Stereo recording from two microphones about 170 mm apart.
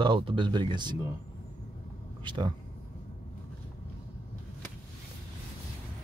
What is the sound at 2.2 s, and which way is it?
Speech, 25° right (ahead or behind).